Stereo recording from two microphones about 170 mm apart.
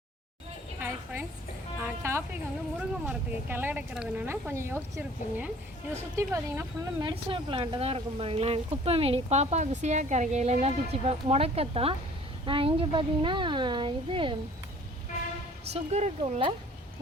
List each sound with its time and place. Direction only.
0.8 s a sound: 10° right (ahead or behind)
1.8 s music: 15° right (ahead or behind)
2.7 s a woman's voice: 10° right (ahead or behind)
7.0 s a child's voice: 30° right (ahead or behind)
15.7 s speech: 40° right (ahead or behind)